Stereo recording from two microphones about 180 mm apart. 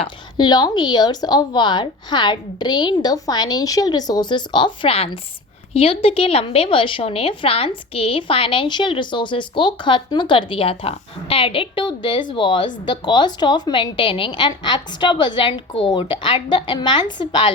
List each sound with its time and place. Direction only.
0.0 s a woman's voice: 25° left (ahead or behind)